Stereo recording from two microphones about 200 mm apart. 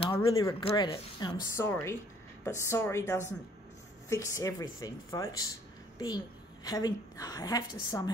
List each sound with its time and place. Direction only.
0.0 s a woman's voice: 25° left (ahead or behind)
6.6 s a woman's voice: 20° left (ahead or behind)